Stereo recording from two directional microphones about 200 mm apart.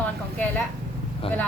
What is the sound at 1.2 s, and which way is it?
Speech, 30° left (ahead or behind).